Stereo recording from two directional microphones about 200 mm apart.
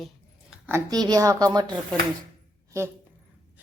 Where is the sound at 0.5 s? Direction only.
15° right (ahead or behind).